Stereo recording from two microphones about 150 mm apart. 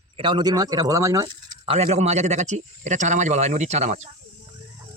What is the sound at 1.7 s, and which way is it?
A man's voice, 45° right (ahead or behind).